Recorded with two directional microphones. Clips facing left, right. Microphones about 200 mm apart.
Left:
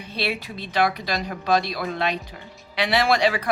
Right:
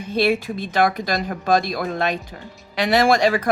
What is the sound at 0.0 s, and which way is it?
Speech, 45° right (ahead or behind).